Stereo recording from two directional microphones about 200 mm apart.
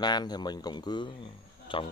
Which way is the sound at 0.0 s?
20° left (ahead or behind).